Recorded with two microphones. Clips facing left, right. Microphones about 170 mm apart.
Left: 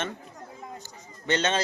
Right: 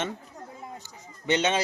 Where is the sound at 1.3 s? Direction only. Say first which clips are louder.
Right 1 dB; 15° right (ahead or behind).